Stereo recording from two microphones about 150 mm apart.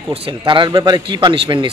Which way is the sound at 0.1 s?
35° right (ahead or behind).